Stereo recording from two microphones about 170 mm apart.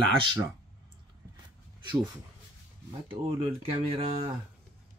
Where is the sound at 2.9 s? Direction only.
25° right (ahead or behind).